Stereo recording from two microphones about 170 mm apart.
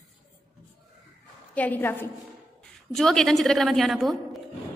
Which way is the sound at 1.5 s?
10° left (ahead or behind).